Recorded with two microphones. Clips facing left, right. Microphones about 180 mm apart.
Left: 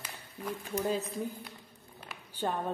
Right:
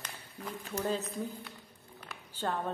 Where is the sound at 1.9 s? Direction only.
15° left (ahead or behind).